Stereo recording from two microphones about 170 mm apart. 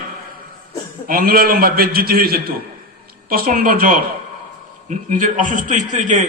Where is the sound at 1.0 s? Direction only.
60° right (ahead or behind).